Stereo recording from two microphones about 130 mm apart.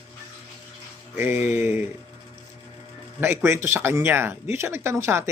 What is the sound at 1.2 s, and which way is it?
Music, 15° right (ahead or behind).